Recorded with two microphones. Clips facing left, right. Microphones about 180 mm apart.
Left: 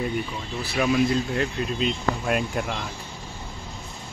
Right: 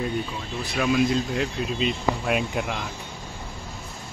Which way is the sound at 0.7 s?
Centre (ahead or behind).